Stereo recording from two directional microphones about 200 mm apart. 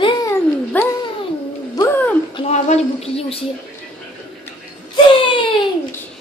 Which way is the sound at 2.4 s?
30° left (ahead or behind).